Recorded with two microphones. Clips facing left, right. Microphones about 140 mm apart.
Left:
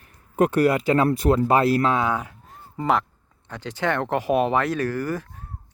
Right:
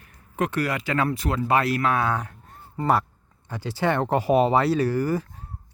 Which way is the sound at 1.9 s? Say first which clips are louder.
Left 1 dB; 15° left (ahead or behind).